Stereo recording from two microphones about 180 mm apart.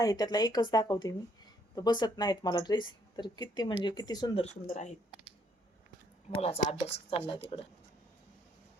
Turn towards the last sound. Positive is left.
turn(degrees=30)  # may be behind; listen again after turning